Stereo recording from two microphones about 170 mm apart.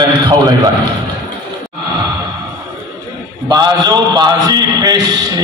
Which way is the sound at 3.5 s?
25° right (ahead or behind).